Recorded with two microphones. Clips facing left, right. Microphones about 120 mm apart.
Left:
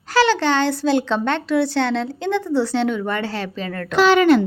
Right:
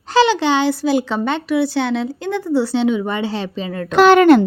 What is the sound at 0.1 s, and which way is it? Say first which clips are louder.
Speech: right 2 dB; 15° right (ahead or behind).